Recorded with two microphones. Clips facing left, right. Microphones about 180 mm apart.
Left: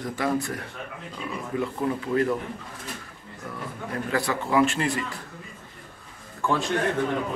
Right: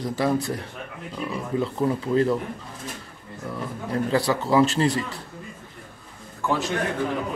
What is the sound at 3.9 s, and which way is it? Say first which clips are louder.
A man's voice: right 5 dB; 30° right (ahead or behind).